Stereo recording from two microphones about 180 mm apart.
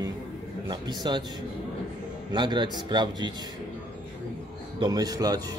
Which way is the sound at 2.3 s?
25° right (ahead or behind).